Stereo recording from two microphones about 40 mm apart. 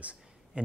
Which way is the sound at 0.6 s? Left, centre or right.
Right.